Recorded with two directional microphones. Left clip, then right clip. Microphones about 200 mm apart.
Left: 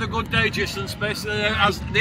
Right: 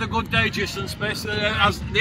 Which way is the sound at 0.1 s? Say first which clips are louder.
Even; 40° right (ahead or behind).